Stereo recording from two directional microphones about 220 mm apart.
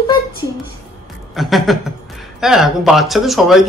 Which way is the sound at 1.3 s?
Centre (ahead or behind).